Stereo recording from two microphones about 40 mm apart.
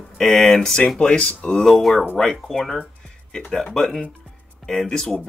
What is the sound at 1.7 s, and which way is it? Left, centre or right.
Speech, centre.